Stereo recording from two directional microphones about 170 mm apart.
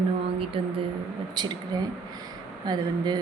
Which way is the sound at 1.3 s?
25° right (ahead or behind).